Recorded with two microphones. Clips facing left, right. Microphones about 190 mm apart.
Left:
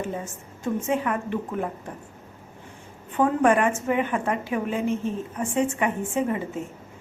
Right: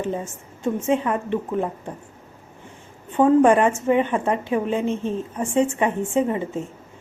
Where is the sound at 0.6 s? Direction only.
25° right (ahead or behind).